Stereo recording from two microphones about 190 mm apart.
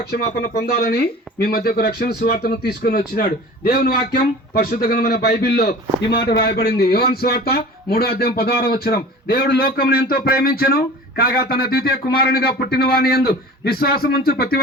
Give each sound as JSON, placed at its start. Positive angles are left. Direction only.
{"t": 0.0, "sound": "speech", "side_deg": 55}